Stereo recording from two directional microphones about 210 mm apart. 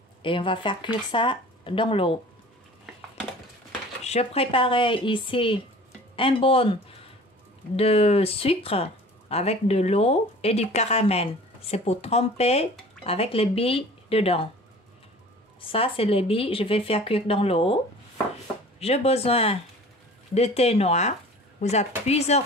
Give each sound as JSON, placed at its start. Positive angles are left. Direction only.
{"t": 0.2, "sound": "speech", "side_deg": 25}
{"t": 4.0, "sound": "speech", "side_deg": 30}
{"t": 15.7, "sound": "speech", "side_deg": 25}
{"t": 18.8, "sound": "speech", "side_deg": 30}